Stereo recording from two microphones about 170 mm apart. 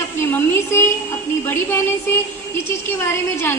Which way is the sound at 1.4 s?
15° left (ahead or behind).